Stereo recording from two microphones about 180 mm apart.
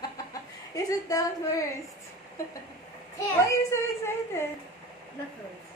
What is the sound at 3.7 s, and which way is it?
Speech, 15° left (ahead or behind).